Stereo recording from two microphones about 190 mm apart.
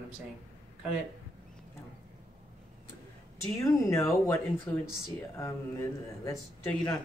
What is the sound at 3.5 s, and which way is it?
Speech, 15° left (ahead or behind).